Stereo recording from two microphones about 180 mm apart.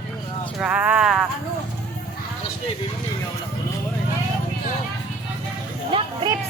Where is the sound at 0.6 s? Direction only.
5° right (ahead or behind).